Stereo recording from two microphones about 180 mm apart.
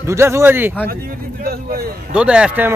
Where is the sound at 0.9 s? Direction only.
55° right (ahead or behind).